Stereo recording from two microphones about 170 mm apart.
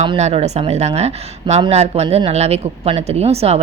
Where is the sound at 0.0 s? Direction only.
35° right (ahead or behind).